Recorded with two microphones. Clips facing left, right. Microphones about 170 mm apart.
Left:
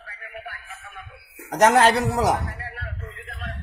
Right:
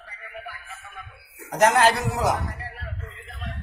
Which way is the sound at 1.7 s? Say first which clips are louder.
Left 3 dB; 30° left (ahead or behind).